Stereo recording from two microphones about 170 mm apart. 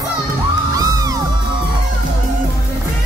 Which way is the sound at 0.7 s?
20° right (ahead or behind).